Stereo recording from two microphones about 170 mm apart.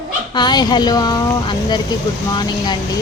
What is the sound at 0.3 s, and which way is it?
Speech, 25° left (ahead or behind).